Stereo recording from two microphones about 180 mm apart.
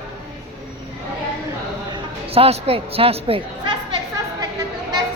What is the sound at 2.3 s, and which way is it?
A woman's voice, 35° right (ahead or behind).